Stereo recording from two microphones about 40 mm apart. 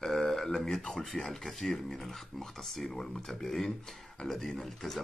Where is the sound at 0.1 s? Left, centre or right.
Centre.